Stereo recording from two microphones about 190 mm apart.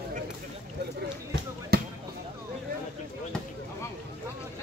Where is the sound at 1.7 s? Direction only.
55° right (ahead or behind).